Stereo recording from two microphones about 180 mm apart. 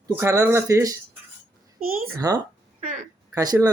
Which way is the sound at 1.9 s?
55° right (ahead or behind).